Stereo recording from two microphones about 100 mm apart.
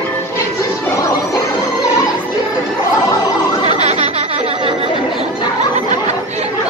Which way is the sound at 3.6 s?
90° right.